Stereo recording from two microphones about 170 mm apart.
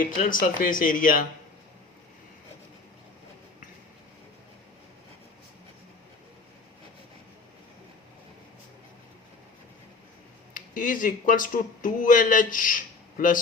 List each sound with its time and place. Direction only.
0.0 s speech: 55° left (ahead or behind)
10.5 s speech: 55° left (ahead or behind)